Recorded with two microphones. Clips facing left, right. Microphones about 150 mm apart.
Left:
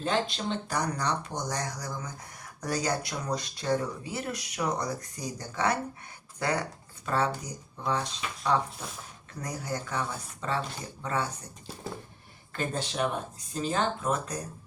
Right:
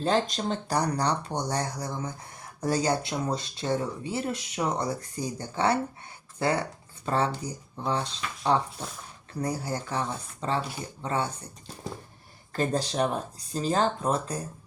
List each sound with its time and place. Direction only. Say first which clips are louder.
0.0 s speech: right 3 dB; 40° right (ahead or behind)
12.5 s speech: right 5 dB; 35° right (ahead or behind)